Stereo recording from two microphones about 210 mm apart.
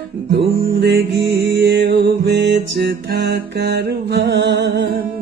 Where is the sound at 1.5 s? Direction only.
60° right (ahead or behind).